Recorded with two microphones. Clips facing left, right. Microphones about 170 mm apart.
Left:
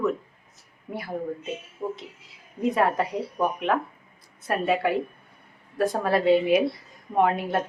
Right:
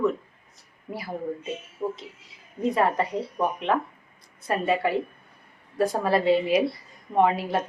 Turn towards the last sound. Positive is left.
turn(degrees=0)  # may be behind; listen again after turning